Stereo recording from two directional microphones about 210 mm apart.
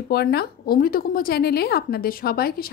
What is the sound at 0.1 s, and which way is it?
A woman's voice, 50° left (ahead or behind).